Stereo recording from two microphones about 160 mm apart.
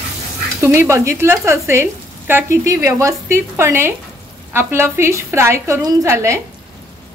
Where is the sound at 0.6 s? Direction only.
15° right (ahead or behind).